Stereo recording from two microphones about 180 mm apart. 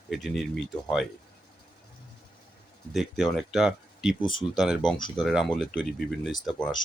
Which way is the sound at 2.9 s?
Centre (ahead or behind).